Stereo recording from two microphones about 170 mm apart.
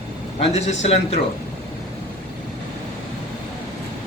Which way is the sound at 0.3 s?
40° left (ahead or behind).